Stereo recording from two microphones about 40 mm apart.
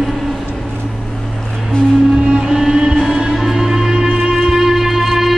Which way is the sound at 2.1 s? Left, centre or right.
Right.